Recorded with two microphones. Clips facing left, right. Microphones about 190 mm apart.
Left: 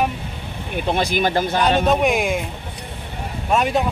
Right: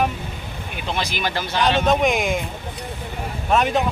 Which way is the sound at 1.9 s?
10° left (ahead or behind).